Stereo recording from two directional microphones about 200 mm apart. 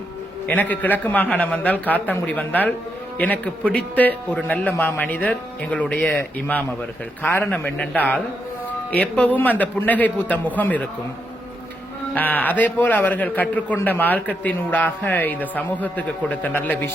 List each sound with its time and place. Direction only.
0.4 s a man's voice: 10° left (ahead or behind)
12.1 s a man's voice: 10° left (ahead or behind)